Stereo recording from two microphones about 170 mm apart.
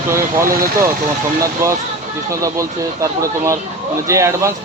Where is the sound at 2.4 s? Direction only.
20° right (ahead or behind).